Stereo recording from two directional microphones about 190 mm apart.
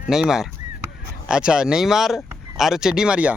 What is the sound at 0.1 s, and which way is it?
Speech, centre (ahead or behind).